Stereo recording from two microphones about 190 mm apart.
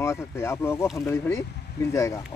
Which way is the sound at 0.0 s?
15° left (ahead or behind).